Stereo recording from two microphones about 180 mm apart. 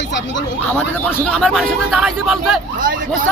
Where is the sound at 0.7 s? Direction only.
5° left (ahead or behind).